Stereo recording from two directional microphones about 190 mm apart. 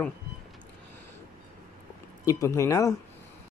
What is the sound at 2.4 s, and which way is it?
Speech, 15° left (ahead or behind).